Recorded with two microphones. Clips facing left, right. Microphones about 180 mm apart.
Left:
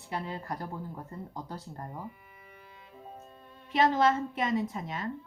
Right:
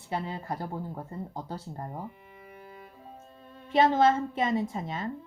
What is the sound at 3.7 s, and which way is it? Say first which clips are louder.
A woman's voice: right 3 dB; 25° right (ahead or behind).